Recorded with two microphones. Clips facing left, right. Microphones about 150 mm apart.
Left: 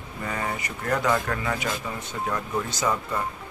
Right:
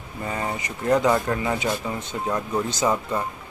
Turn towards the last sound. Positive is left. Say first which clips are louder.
# right 3 dB
turn(degrees=-20)  # may be behind; listen again after turning